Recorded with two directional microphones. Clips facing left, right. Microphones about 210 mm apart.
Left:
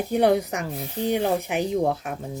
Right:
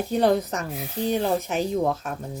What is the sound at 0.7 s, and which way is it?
Speech, centre (ahead or behind).